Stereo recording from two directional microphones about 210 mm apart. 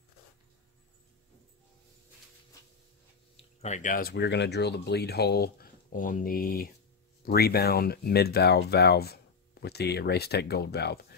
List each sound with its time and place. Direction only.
3.6 s speech: 35° left (ahead or behind)